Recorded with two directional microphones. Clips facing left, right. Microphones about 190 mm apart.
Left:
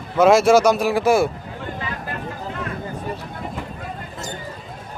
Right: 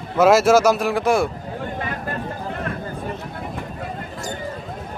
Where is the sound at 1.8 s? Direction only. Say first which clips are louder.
Right 2 dB; 50° right (ahead or behind).